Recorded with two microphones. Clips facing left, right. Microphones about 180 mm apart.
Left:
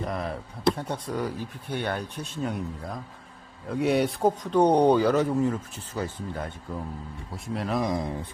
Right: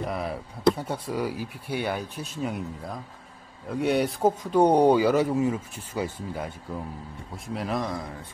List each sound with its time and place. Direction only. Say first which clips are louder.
0.0 s speech: right 1 dB; 5° right (ahead or behind)
7.8 s speech: left 4 dB; 20° left (ahead or behind)